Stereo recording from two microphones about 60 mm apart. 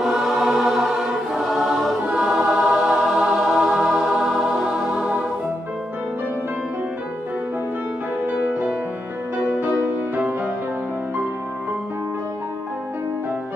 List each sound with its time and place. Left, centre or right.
0.0 s choir: centre
2.0 s music: centre
8.3 s music: right